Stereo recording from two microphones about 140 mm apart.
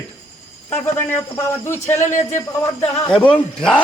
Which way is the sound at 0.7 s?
15° left (ahead or behind).